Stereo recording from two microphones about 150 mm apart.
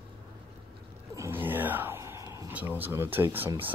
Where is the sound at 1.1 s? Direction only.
15° right (ahead or behind).